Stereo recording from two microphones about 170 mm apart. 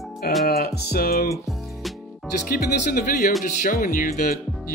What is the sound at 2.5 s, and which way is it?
Speech, 60° left (ahead or behind).